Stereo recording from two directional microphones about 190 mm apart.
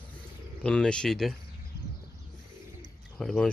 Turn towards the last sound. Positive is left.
turn(degrees=0)  # may be behind; listen again after turning